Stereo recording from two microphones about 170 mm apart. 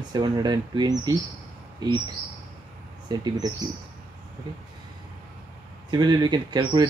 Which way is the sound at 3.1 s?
25° right (ahead or behind).